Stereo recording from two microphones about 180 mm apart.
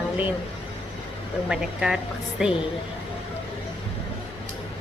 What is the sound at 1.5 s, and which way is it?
Speech, 5° right (ahead or behind).